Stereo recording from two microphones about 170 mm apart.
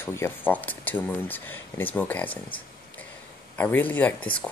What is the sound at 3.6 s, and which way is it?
Speech, 10° left (ahead or behind).